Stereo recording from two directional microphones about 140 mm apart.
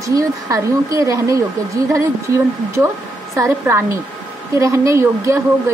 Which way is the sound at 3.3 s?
20° right (ahead or behind).